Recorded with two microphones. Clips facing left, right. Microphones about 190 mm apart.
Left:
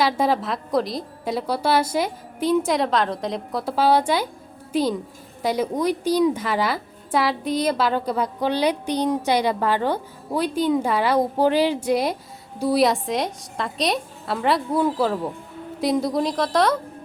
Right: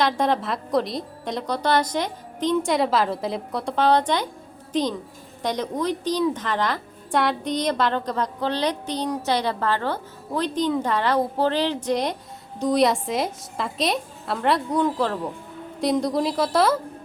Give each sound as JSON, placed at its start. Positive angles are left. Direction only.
{"t": 0.0, "sound": "a woman's voice", "side_deg": 5}